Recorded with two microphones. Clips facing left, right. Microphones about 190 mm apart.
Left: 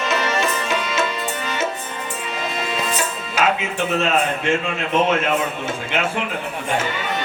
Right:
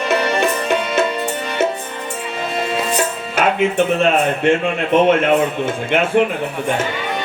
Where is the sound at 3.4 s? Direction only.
55° right (ahead or behind).